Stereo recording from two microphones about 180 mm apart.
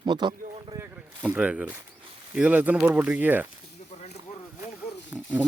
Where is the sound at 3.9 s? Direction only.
40° left (ahead or behind).